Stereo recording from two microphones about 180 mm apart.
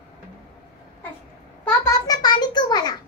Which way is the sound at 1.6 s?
15° left (ahead or behind).